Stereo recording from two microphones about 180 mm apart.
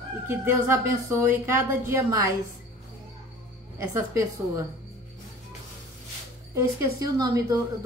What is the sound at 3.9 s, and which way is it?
Speech, 15° right (ahead or behind).